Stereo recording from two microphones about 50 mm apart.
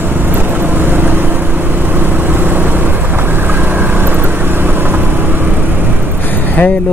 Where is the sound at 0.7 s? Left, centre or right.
Right.